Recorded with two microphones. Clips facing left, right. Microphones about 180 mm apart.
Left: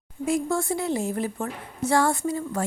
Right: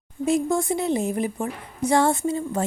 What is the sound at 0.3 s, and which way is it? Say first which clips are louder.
A woman's voice: right 3 dB; 20° right (ahead or behind).